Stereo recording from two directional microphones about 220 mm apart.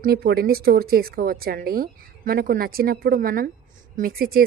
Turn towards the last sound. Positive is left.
turn(degrees=-40)  # may be behind; listen again after turning